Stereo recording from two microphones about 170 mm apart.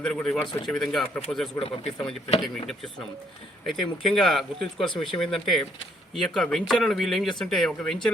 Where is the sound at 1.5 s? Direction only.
35° left (ahead or behind).